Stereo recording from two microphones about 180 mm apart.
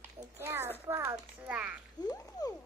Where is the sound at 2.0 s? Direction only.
20° left (ahead or behind).